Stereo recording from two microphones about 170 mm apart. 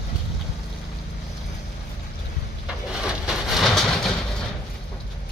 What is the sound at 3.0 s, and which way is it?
Vehicle, centre (ahead or behind).